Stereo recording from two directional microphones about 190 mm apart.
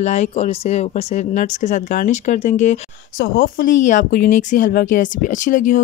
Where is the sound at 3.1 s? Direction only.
90° left.